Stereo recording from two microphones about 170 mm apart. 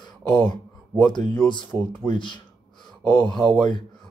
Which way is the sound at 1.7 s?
25° right (ahead or behind).